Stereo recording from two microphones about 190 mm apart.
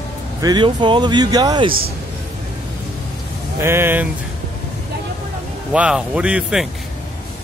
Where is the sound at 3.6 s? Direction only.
15° right (ahead or behind).